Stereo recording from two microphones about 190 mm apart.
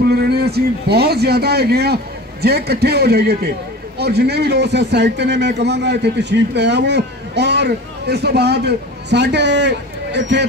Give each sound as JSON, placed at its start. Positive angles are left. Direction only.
{"t": 0.0, "sound": "a man's voice", "side_deg": -60}